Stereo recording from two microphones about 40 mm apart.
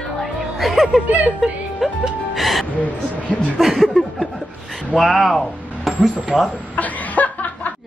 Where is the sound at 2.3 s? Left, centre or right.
Centre.